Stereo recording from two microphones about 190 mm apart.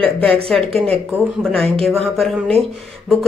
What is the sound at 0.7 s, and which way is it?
Speech, 30° right (ahead or behind).